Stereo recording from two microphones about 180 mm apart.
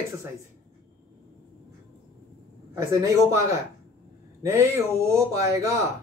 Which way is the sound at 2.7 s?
15° right (ahead or behind).